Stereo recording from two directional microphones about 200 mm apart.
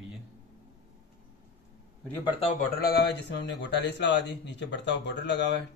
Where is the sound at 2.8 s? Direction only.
50° left (ahead or behind).